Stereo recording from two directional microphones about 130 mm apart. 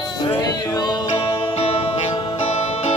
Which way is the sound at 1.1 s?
50° left (ahead or behind).